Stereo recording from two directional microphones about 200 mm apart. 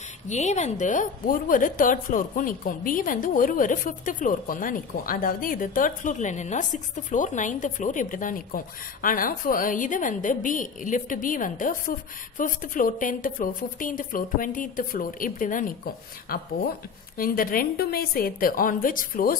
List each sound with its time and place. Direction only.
0.3 s a woman's voice: 35° left (ahead or behind)